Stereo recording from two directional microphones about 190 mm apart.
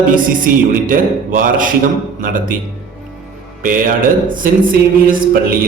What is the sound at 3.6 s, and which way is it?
Speech, 45° right (ahead or behind).